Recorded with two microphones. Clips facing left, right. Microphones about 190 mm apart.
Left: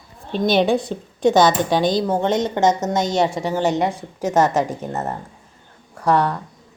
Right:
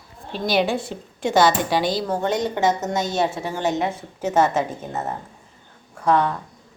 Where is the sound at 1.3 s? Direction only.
10° right (ahead or behind).